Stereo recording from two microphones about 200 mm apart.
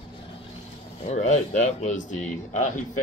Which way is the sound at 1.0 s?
35° left (ahead or behind).